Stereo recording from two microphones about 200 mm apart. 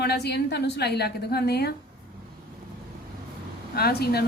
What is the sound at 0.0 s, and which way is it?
Speech, 55° left (ahead or behind).